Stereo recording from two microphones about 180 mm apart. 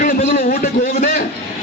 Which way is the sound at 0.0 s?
50° left (ahead or behind).